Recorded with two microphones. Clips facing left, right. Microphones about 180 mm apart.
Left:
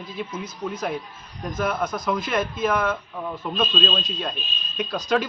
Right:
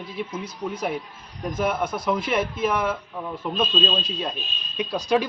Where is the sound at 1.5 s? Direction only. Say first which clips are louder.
Right 1 dB; 10° right (ahead or behind).